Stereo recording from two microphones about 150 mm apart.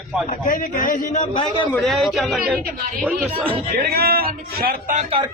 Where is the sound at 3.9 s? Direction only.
90° right.